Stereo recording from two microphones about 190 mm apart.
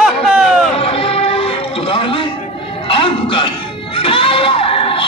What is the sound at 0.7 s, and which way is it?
Music, 30° left (ahead or behind).